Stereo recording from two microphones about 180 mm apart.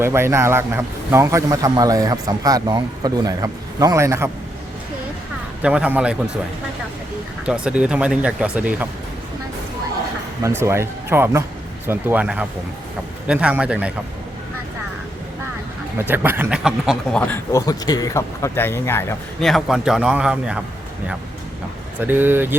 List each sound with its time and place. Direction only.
0.0 s a man's voice: 15° right (ahead or behind)
5.6 s speech: 5° right (ahead or behind)
7.4 s speech: 5° right (ahead or behind)
10.6 s speech: 15° right (ahead or behind)
16.0 s speech: 10° right (ahead or behind); by 17.3 s 5° left (ahead or behind)
17.5 s speech: 20° left (ahead or behind)
19.4 s speech: centre (ahead or behind)
22.0 s speech: 10° right (ahead or behind)